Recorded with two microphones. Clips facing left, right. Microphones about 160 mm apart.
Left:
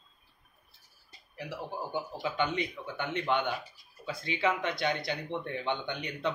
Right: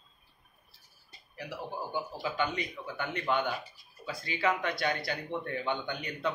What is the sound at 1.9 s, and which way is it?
A man's voice, 25° left (ahead or behind).